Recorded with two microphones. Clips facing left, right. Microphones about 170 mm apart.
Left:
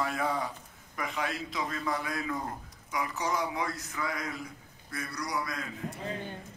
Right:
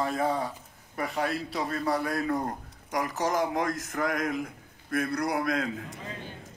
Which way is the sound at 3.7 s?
90° right.